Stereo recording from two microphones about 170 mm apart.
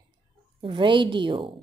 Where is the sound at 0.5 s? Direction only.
30° right (ahead or behind).